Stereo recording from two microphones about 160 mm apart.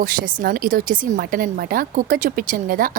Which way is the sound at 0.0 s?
60° right (ahead or behind).